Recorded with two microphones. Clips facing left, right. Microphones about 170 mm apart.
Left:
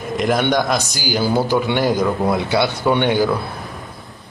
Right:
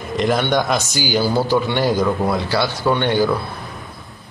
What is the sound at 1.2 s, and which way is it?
A man's voice, 15° left (ahead or behind).